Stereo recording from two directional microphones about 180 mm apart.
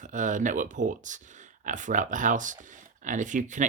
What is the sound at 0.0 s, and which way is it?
Speech, 45° right (ahead or behind).